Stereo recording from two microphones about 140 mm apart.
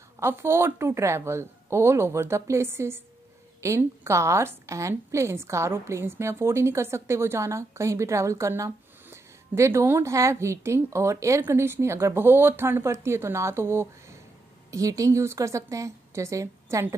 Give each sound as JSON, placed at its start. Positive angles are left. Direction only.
{"t": 0.2, "sound": "a woman's voice", "side_deg": -20}